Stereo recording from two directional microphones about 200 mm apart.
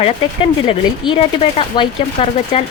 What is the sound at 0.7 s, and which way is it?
Speech, 25° left (ahead or behind).